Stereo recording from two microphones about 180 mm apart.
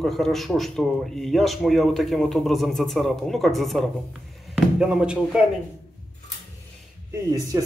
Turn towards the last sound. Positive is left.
turn(degrees=-20)  # may be behind; listen again after turning